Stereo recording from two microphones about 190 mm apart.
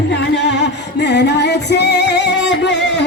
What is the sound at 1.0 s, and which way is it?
Music, 65° left (ahead or behind).